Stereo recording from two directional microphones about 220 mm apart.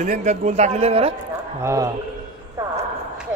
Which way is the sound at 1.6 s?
15° right (ahead or behind).